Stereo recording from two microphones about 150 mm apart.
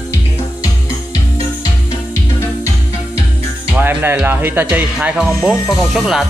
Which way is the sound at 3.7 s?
15° right (ahead or behind).